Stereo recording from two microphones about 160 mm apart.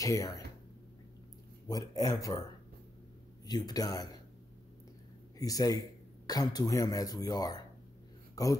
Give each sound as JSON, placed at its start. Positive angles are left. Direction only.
{"t": 0.0, "sound": "speech", "side_deg": 20}
{"t": 1.7, "sound": "speech", "side_deg": 20}
{"t": 3.4, "sound": "speech", "side_deg": 25}
{"t": 5.4, "sound": "speech", "side_deg": 20}